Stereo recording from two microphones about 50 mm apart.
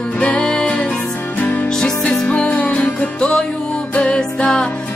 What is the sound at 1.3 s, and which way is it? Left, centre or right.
Music, left.